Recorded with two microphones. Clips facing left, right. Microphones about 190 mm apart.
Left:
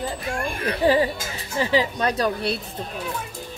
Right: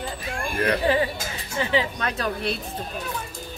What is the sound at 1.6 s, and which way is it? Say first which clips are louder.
Speech: left 3 dB; 35° left (ahead or behind).